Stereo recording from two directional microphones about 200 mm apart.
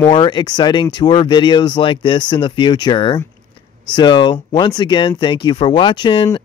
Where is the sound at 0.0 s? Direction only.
20° left (ahead or behind).